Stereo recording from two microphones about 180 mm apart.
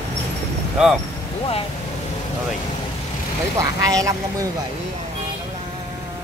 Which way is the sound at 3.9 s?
20° right (ahead or behind).